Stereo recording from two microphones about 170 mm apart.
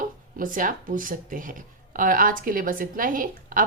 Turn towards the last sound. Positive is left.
turn(degrees=-55)  # may be behind; listen again after turning